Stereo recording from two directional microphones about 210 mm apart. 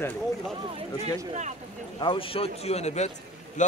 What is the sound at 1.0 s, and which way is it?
Speech, 35° right (ahead or behind).